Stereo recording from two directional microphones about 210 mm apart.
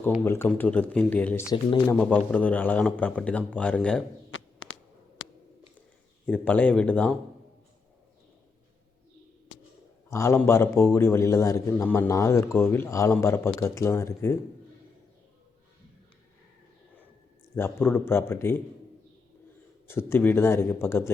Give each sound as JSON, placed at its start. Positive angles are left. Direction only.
{"t": 0.3, "sound": "a man's voice", "side_deg": 10}
{"t": 4.3, "sound": "a sound", "side_deg": 70}
{"t": 6.2, "sound": "a man's voice", "side_deg": 5}
{"t": 10.1, "sound": "a man's voice", "side_deg": 15}
{"t": 17.5, "sound": "a man's voice", "side_deg": 10}
{"t": 19.9, "sound": "a man's voice", "side_deg": 10}